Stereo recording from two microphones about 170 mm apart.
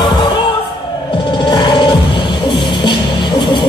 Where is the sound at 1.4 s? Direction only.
30° left (ahead or behind).